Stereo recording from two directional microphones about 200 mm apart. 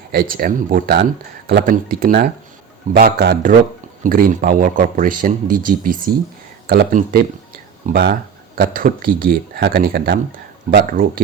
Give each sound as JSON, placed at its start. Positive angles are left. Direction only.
{"t": 0.1, "sound": "speech", "side_deg": -45}